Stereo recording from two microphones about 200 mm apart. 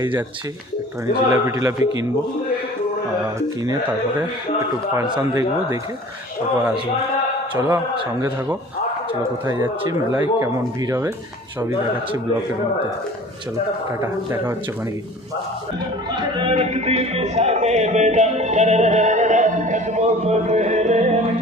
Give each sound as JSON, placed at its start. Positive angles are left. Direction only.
{"t": 0.0, "sound": "speech", "side_deg": -15}
{"t": 1.3, "sound": "speech", "side_deg": -15}
{"t": 4.9, "sound": "speech", "side_deg": -20}
{"t": 7.5, "sound": "speech", "side_deg": -20}
{"t": 16.1, "sound": "music", "side_deg": -30}